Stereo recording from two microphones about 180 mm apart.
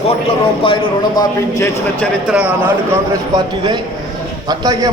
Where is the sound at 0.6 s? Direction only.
25° left (ahead or behind).